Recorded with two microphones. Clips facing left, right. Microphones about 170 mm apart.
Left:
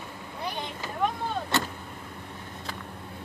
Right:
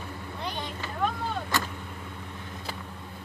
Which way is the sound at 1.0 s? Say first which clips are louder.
Left 1 dB; 25° left (ahead or behind).